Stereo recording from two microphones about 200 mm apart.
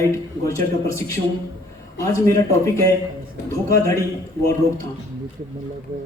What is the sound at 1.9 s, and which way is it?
A man's voice, 15° left (ahead or behind).